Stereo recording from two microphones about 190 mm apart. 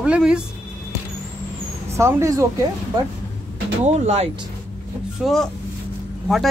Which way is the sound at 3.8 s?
35° right (ahead or behind).